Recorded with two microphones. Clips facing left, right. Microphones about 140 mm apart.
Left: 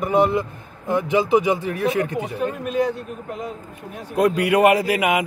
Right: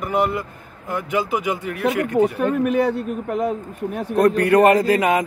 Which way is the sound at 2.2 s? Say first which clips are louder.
Right 7 dB; 65° right (ahead or behind).